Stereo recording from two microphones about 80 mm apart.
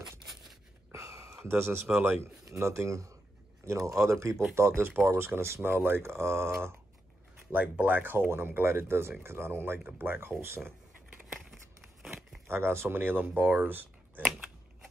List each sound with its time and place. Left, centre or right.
0.9 s a sound: right
2.4 s speech: right
7.5 s speech: centre
12.0 s tearing: centre
12.4 s speech: right